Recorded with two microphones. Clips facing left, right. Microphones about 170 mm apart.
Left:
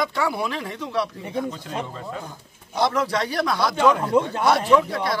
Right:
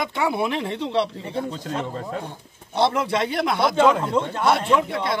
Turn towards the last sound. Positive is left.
turn(degrees=-25)  # may be behind; listen again after turning